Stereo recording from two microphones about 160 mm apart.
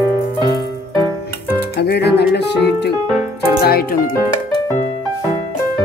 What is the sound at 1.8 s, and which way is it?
Speech, 90° left.